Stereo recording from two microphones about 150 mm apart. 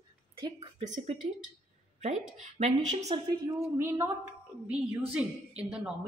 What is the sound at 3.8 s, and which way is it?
Speech, 15° right (ahead or behind).